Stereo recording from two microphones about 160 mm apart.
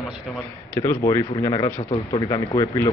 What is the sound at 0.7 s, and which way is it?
Speech, 20° left (ahead or behind).